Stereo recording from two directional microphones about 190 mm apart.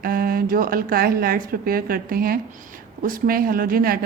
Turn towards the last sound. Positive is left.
turn(degrees=-50)  # may be behind; listen again after turning